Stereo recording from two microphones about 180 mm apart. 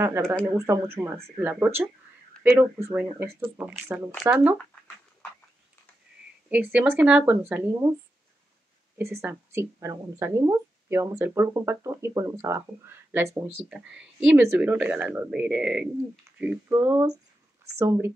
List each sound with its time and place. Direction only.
0.0 s speech: 15° right (ahead or behind)
6.5 s speech: 10° right (ahead or behind)
8.9 s speech: 15° right (ahead or behind)